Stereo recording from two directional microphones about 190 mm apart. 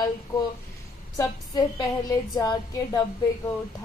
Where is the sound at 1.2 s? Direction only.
20° left (ahead or behind).